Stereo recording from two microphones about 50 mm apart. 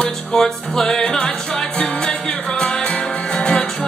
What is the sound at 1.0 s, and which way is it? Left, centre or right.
Music, left.